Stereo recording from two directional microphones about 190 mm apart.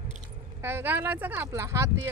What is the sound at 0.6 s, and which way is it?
Speech, 10° right (ahead or behind).